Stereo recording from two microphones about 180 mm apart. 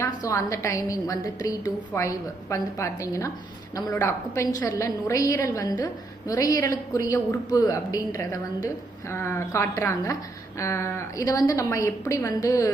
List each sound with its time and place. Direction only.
0.0 s a woman's voice: 15° left (ahead or behind)